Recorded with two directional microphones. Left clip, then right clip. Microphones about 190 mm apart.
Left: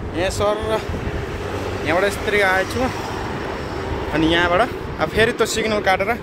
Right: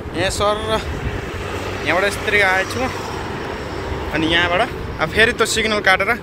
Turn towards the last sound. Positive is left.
turn(degrees=5)  # may be behind; listen again after turning